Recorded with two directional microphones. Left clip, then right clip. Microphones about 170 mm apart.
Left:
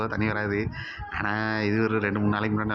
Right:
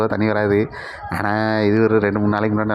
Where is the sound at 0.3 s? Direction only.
45° right (ahead or behind).